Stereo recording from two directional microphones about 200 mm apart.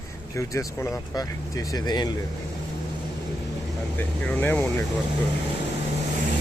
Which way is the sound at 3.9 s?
10° left (ahead or behind).